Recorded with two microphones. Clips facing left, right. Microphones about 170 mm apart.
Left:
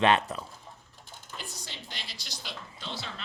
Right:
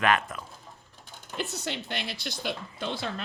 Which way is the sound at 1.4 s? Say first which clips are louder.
Right 14 dB; 65° right (ahead or behind).